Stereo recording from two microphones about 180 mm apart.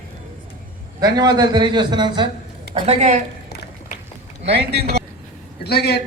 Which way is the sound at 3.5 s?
60° left (ahead or behind).